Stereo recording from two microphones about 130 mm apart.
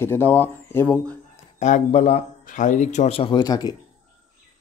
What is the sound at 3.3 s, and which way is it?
Speech, 30° left (ahead or behind).